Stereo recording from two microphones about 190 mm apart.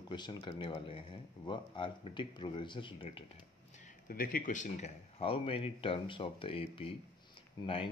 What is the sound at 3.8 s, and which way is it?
Speech, 45° left (ahead or behind).